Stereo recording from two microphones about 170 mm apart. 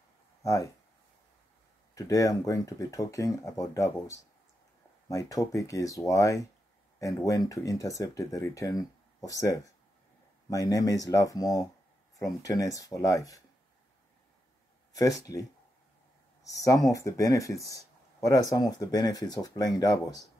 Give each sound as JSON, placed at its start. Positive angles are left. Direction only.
{"t": 0.4, "sound": "speech", "side_deg": 20}
{"t": 2.0, "sound": "speech", "side_deg": 20}
{"t": 14.9, "sound": "speech", "side_deg": 20}
{"t": 16.4, "sound": "speech", "side_deg": 20}